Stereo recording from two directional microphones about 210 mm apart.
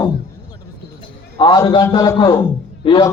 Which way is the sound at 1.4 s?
20° left (ahead or behind).